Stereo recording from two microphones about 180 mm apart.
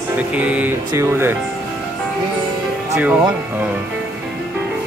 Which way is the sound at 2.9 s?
10° right (ahead or behind).